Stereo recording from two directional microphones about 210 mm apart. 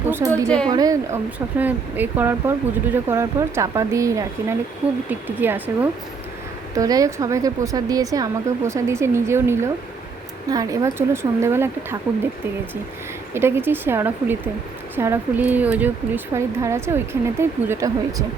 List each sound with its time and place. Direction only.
0.3 s a woman's voice: 5° left (ahead or behind)
0.7 s speech: 15° right (ahead or behind)
13.3 s speech: 10° right (ahead or behind)